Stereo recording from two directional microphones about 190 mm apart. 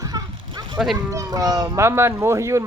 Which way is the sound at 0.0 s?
20° right (ahead or behind).